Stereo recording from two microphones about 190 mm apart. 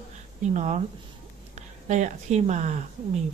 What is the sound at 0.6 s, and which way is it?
Speech, 35° right (ahead or behind).